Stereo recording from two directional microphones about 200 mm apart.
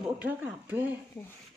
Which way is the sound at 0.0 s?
10° right (ahead or behind).